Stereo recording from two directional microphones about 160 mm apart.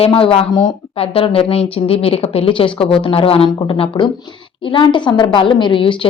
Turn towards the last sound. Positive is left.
turn(degrees=35)  # may be behind; listen again after turning